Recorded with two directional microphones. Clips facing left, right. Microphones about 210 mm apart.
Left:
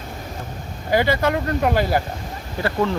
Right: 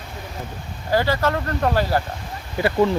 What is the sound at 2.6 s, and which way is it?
Speech, 15° right (ahead or behind).